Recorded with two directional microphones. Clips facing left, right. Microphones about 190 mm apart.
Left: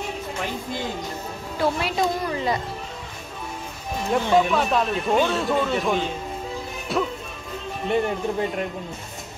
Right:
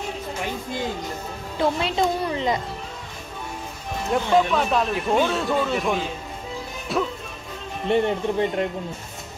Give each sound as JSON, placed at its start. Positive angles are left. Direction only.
{"t": 1.6, "sound": "a woman's voice", "side_deg": -25}
{"t": 4.1, "sound": "speech", "side_deg": 0}
{"t": 7.9, "sound": "a woman's voice", "side_deg": -25}